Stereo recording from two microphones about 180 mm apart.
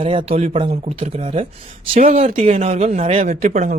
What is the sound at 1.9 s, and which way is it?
Speech, 35° right (ahead or behind).